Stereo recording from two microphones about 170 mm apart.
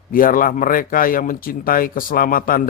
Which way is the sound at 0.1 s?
55° left (ahead or behind).